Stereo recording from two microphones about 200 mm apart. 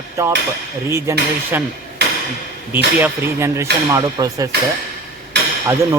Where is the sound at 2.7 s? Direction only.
10° right (ahead or behind).